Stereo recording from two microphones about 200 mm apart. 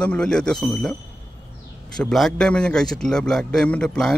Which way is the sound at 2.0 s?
Centre (ahead or behind).